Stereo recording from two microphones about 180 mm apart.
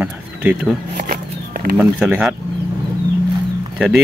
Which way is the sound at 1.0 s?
55° right (ahead or behind).